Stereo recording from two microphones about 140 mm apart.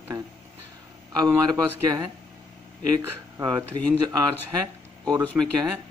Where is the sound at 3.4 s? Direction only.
30° right (ahead or behind).